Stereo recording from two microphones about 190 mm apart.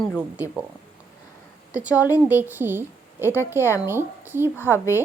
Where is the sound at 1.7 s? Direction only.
5° right (ahead or behind).